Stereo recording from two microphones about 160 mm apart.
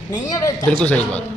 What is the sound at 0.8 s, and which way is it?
Speech, 10° left (ahead or behind).